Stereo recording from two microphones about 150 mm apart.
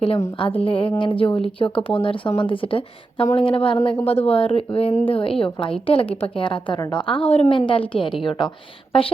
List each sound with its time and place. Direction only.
0.3 s a woman's voice: 35° left (ahead or behind)